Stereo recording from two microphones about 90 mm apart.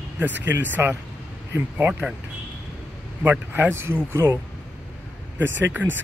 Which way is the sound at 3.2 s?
20° right (ahead or behind).